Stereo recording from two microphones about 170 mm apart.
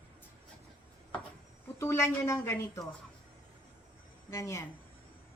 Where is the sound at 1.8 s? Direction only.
15° left (ahead or behind).